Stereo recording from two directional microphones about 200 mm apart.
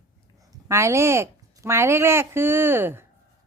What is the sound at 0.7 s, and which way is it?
Speech, 15° right (ahead or behind).